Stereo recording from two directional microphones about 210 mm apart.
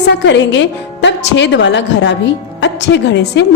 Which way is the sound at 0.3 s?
55° left (ahead or behind).